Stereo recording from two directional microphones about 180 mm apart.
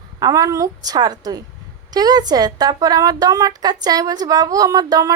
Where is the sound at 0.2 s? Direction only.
20° right (ahead or behind).